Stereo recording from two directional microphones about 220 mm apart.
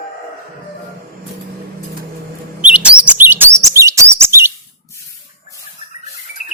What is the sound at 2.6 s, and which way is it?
Chirp, 5° right (ahead or behind).